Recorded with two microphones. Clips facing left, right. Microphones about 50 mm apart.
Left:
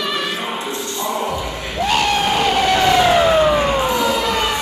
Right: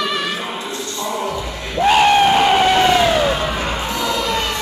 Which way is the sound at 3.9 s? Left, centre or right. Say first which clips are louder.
Left 3 dB; left.